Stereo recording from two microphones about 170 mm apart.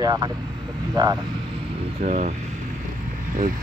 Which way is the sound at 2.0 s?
40° right (ahead or behind).